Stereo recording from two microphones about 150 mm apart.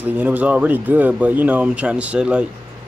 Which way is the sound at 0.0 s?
10° right (ahead or behind).